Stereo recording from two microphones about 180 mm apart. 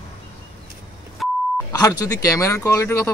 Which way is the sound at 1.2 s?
Centre (ahead or behind).